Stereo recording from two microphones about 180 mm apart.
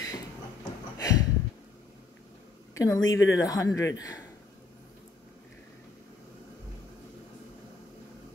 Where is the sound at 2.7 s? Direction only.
20° left (ahead or behind).